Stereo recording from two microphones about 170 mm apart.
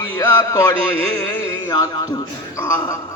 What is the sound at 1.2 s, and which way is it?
Speech, 20° left (ahead or behind).